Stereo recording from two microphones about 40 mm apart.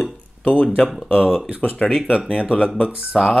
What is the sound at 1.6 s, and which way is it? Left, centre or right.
Speech, left.